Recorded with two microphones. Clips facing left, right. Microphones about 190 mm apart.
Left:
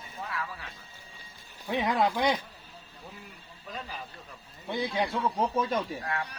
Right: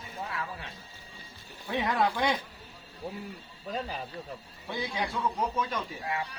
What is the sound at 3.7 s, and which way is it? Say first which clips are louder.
Speech: right 6 dB; 35° right (ahead or behind).